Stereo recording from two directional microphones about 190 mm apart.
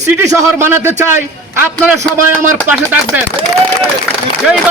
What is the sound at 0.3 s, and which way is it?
A man's voice, 15° right (ahead or behind).